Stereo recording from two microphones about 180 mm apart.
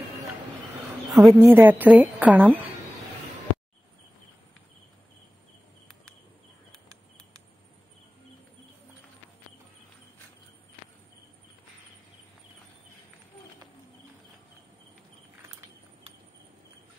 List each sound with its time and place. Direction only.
1.1 s a woman's voice: centre (ahead or behind)
1.4 s a woman's voice: 10° right (ahead or behind)